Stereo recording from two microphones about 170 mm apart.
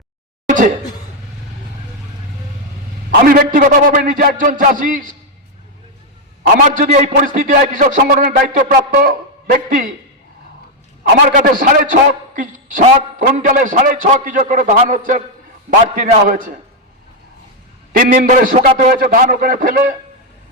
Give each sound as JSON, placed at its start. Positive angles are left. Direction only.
{"t": 0.4, "sound": "a sound", "side_deg": -50}
{"t": 3.2, "sound": "a man's voice", "side_deg": -55}
{"t": 6.7, "sound": "a man's voice", "side_deg": -45}
{"t": 11.3, "sound": "a man's voice", "side_deg": -55}
{"t": 17.9, "sound": "a man's voice", "side_deg": -55}